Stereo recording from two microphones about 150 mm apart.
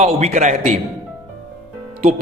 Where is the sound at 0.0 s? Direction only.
50° right (ahead or behind).